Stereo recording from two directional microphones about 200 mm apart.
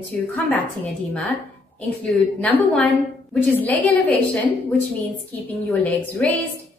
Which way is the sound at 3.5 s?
5° left (ahead or behind).